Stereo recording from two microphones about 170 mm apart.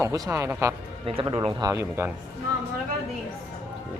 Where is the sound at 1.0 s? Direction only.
30° right (ahead or behind); by 2.1 s 15° right (ahead or behind).